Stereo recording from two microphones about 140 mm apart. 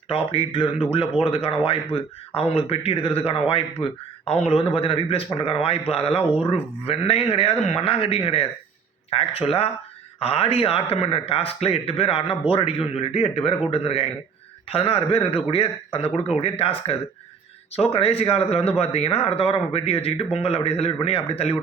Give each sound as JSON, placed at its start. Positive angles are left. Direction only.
{"t": 0.1, "sound": "a man's voice", "side_deg": 45}